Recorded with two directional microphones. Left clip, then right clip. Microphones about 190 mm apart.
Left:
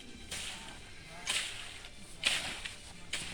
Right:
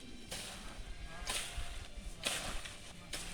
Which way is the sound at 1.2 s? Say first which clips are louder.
Left 6 dB; 40° right (ahead or behind).